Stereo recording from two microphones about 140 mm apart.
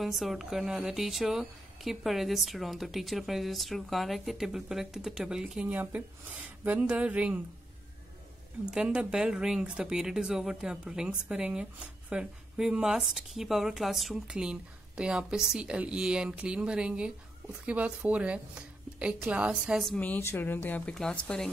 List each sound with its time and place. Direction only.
0.0 s speech: centre (ahead or behind)
8.6 s speech: 5° right (ahead or behind)
20.0 s speech: 15° left (ahead or behind)